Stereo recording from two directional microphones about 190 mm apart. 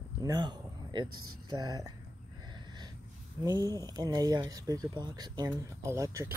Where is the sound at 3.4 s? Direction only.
15° right (ahead or behind).